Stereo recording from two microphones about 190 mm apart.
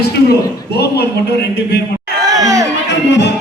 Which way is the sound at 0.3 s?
60° left (ahead or behind).